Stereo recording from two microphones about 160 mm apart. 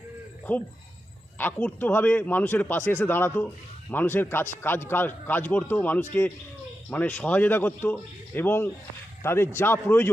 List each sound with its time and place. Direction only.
1.4 s a man's voice: 10° left (ahead or behind)